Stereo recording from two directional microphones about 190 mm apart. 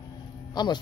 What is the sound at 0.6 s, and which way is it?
Speech, 25° left (ahead or behind).